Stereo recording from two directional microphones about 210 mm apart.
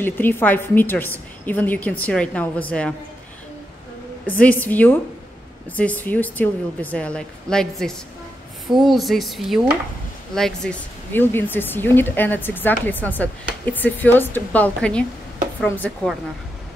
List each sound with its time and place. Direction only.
0.0 s speech: 10° left (ahead or behind)
4.3 s speech: 5° left (ahead or behind)